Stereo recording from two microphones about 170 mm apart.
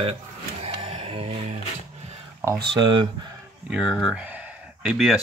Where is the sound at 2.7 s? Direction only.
30° right (ahead or behind).